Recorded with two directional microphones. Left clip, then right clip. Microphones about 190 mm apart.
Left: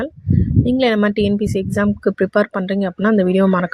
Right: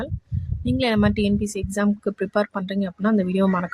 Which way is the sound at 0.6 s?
20° left (ahead or behind).